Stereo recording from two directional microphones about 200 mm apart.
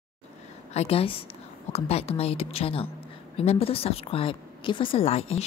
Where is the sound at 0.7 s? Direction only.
30° left (ahead or behind).